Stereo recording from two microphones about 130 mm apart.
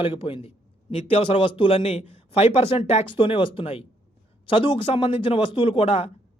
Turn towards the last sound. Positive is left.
turn(degrees=50)  # may be behind; listen again after turning